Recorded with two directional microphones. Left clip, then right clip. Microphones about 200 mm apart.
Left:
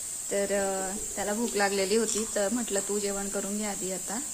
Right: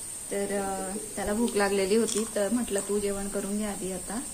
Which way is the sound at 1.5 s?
15° left (ahead or behind).